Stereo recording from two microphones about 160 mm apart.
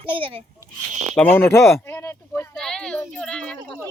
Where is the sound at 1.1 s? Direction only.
15° left (ahead or behind).